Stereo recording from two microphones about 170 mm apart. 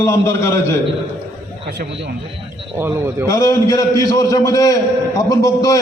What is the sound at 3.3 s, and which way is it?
A man's voice, 20° left (ahead or behind).